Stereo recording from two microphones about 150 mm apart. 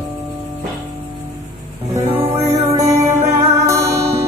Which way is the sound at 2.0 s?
20° right (ahead or behind).